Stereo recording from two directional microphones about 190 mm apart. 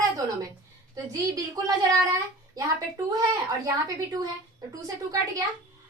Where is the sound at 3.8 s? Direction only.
20° right (ahead or behind).